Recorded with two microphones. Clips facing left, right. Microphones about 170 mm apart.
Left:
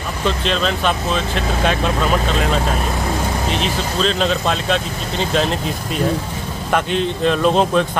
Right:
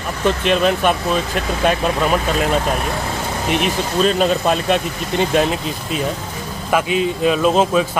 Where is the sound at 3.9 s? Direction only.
10° right (ahead or behind).